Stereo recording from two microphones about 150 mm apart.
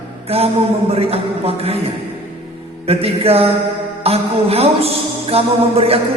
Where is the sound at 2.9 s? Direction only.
40° right (ahead or behind).